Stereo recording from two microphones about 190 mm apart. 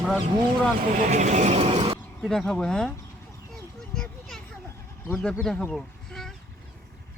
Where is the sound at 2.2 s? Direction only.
Centre (ahead or behind).